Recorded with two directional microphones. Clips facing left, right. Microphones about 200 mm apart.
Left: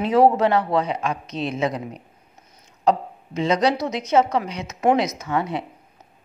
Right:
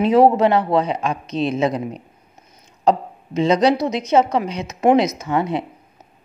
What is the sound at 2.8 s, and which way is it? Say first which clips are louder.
A woman's voice: right 2 dB; 25° right (ahead or behind).